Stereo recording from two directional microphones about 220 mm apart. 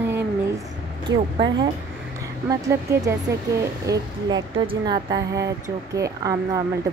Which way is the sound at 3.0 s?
15° right (ahead or behind).